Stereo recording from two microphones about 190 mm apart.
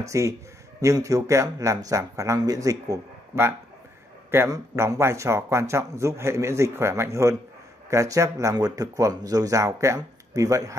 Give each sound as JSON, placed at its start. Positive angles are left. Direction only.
{"t": 0.0, "sound": "speech", "side_deg": -15}